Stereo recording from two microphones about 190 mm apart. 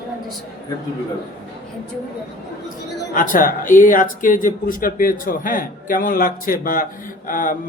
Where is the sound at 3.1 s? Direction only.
45° left (ahead or behind).